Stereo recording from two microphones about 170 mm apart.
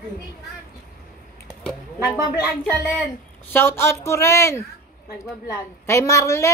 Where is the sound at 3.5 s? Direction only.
15° left (ahead or behind).